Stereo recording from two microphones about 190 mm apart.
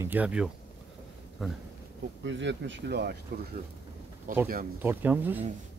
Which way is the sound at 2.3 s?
70° right (ahead or behind).